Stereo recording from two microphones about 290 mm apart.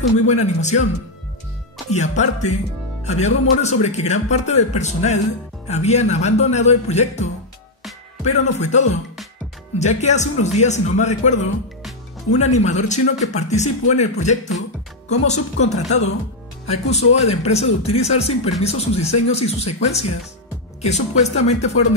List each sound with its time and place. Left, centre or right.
0.3 s speech: left
1.9 s speech: left